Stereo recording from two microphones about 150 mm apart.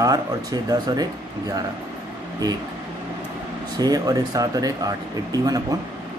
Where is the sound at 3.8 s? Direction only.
25° right (ahead or behind).